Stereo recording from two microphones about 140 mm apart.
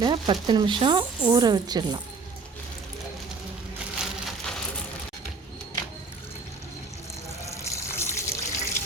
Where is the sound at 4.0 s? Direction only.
Centre (ahead or behind).